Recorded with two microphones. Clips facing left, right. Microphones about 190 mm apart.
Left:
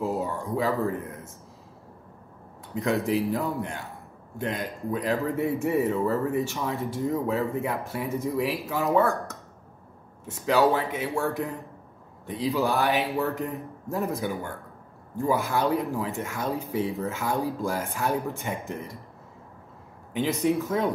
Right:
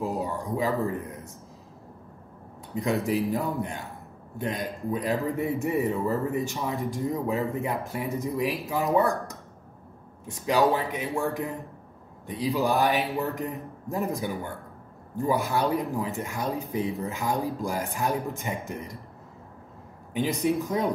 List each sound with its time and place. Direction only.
0.0 s a sound: 15° right (ahead or behind)
0.8 s speech: 15° right (ahead or behind)
3.1 s speech: 15° right (ahead or behind)
20.2 s speech: 15° right (ahead or behind)